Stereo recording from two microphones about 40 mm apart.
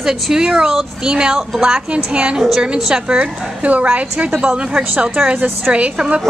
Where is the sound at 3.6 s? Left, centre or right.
Right.